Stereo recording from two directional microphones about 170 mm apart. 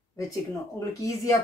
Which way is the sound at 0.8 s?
20° left (ahead or behind).